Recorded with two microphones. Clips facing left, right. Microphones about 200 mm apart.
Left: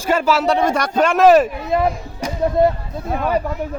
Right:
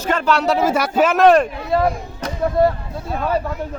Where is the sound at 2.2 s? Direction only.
20° left (ahead or behind).